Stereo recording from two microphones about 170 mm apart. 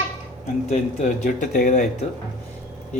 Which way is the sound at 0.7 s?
45° left (ahead or behind).